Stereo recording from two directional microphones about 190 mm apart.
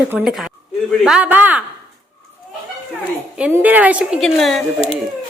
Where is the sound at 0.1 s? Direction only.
5° right (ahead or behind).